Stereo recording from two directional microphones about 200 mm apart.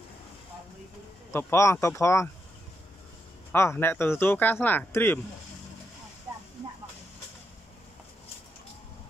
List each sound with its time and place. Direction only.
1.3 s speech: 15° left (ahead or behind)
3.5 s speech: 10° left (ahead or behind)
6.3 s a sound: 10° right (ahead or behind)